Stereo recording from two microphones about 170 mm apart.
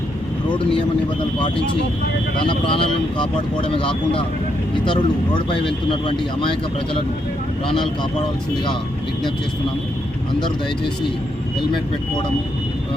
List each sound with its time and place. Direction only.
0.5 s speech: 30° left (ahead or behind)
2.4 s speech: 30° left (ahead or behind)